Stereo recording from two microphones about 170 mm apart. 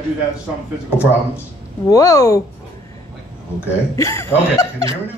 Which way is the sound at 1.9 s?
20° left (ahead or behind).